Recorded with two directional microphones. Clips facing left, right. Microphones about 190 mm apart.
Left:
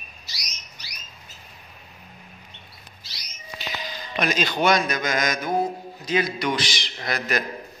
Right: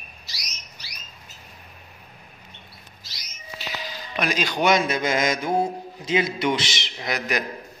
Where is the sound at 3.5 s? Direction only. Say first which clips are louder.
Even; 5° right (ahead or behind).